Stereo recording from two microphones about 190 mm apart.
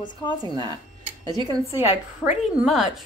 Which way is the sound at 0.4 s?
20° right (ahead or behind).